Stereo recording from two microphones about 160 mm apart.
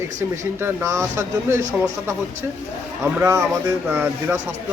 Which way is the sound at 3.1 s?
15° right (ahead or behind).